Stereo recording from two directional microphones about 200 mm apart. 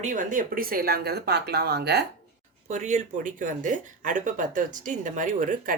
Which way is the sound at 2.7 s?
35° right (ahead or behind).